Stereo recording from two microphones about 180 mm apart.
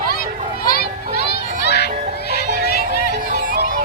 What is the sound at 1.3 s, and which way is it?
Children playing, 65° left (ahead or behind).